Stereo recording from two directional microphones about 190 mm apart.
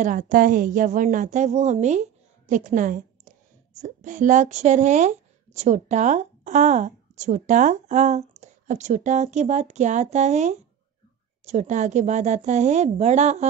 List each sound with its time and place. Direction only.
0.0 s a woman's voice: 45° right (ahead or behind)